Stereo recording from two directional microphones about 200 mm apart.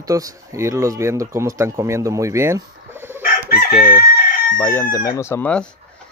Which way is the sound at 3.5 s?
50° left (ahead or behind).